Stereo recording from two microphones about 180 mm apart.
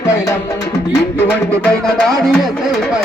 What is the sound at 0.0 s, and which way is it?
Music, 15° left (ahead or behind).